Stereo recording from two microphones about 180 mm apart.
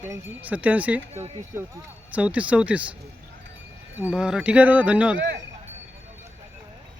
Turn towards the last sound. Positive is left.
turn(degrees=-5)  # may be behind; listen again after turning